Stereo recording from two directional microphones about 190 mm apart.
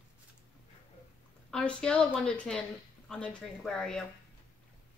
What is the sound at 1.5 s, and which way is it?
A woman's voice, 5° left (ahead or behind).